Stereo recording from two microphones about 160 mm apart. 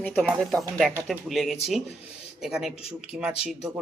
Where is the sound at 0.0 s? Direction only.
10° left (ahead or behind).